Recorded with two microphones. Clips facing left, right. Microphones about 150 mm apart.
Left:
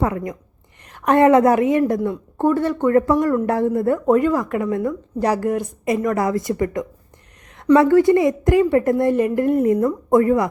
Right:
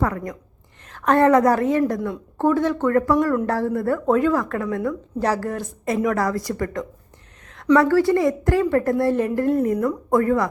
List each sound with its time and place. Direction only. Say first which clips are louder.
0.0 s a woman's voice: left 2 dB; 20° left (ahead or behind)
5.9 s a woman's voice: left 1 dB; centre (ahead or behind)
6.1 s a woman's voice: left 3 dB; 20° left (ahead or behind)